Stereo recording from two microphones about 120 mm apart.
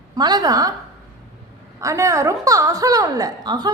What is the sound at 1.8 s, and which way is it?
A woman's voice, 25° right (ahead or behind).